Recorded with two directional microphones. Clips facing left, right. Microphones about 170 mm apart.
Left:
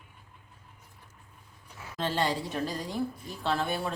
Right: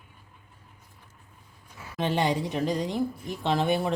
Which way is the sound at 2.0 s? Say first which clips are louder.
Right 4 dB; 20° right (ahead or behind).